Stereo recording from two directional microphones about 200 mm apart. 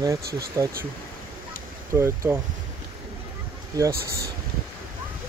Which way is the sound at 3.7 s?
15° right (ahead or behind).